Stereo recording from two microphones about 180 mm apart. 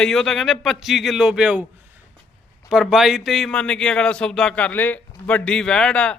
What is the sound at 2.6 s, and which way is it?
A man's voice, 5° right (ahead or behind).